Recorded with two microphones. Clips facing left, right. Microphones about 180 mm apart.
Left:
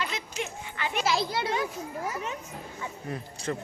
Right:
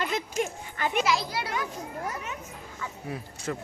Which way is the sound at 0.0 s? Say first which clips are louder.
Right 5 dB; 50° right (ahead or behind).